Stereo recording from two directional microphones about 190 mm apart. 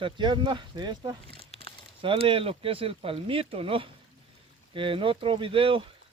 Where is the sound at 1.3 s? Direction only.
30° left (ahead or behind).